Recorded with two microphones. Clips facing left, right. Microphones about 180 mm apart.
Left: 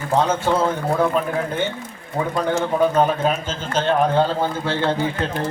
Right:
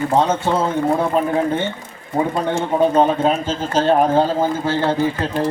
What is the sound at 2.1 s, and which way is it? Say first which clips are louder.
A man's voice: right 2 dB; 30° right (ahead or behind).